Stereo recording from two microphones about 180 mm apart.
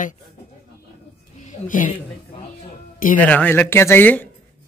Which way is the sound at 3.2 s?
10° left (ahead or behind).